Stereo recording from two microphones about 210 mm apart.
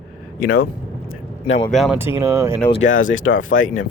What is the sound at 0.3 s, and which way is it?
Speech, 45° left (ahead or behind).